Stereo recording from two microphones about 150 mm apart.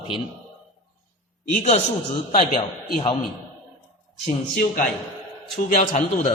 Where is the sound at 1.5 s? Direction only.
45° left (ahead or behind).